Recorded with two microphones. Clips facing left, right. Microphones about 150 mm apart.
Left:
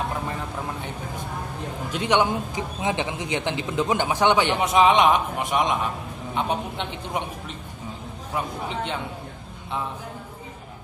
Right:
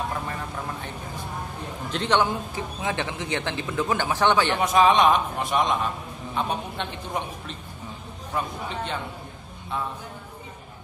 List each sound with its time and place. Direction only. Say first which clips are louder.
1.9 s a man's voice: left 1 dB; 10° left (ahead or behind)